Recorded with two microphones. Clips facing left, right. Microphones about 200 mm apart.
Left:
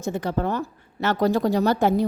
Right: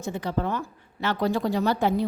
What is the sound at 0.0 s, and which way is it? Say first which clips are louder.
A woman's voice: left 3 dB; 45° left (ahead or behind).